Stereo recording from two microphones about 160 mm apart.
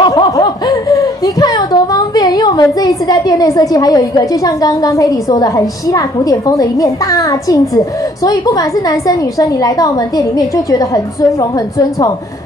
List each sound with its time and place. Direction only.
0.0 s speech: 30° left (ahead or behind)